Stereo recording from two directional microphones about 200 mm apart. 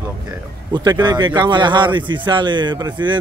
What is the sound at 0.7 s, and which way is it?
Speech, 20° right (ahead or behind).